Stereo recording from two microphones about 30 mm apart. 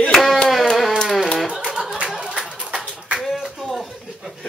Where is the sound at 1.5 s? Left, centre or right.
Right.